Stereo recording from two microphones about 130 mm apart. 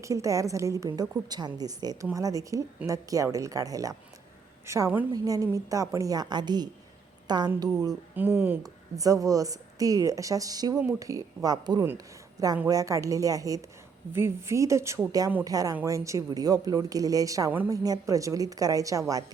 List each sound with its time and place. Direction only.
0.0 s a woman's voice: 25° right (ahead or behind)
8.1 s a woman's voice: 15° right (ahead or behind)